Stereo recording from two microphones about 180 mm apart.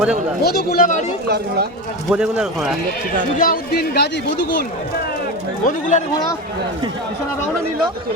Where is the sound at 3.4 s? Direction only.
55° left (ahead or behind).